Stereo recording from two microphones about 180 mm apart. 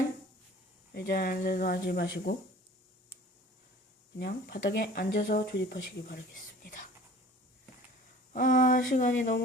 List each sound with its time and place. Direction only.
0.9 s speech: 60° left (ahead or behind)
4.2 s speech: 65° left (ahead or behind); by 6.8 s 50° left (ahead or behind)
8.3 s speech: 50° left (ahead or behind)